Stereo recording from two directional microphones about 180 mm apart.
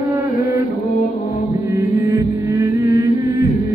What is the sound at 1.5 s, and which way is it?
Chant, 10° right (ahead or behind).